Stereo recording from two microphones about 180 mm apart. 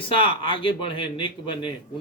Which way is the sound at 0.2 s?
30° left (ahead or behind).